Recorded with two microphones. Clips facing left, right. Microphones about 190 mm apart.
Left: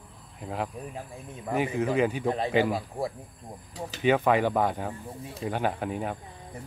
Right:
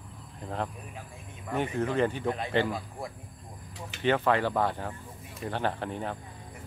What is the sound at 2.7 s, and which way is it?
Speech, 35° left (ahead or behind).